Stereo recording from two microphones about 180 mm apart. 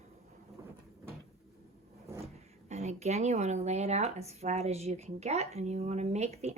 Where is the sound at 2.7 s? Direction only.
35° right (ahead or behind).